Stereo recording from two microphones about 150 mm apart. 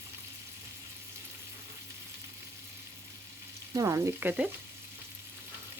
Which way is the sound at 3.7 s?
20° right (ahead or behind).